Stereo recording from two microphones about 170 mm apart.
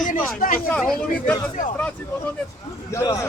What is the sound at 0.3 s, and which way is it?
Speech, 55° left (ahead or behind).